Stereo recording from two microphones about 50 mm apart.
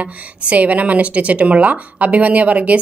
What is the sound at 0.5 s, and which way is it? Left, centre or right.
Speech, right.